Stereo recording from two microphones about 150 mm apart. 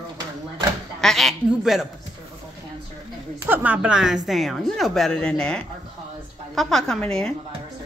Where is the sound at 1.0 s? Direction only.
Centre (ahead or behind).